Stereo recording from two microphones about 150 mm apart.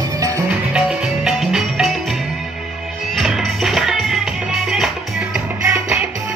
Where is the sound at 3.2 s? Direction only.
Centre (ahead or behind).